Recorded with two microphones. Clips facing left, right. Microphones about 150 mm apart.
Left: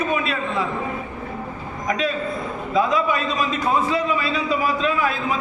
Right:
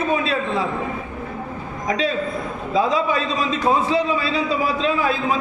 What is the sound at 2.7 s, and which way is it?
A man's voice, 30° right (ahead or behind).